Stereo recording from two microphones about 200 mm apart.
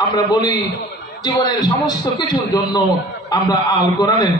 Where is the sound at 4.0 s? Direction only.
20° left (ahead or behind).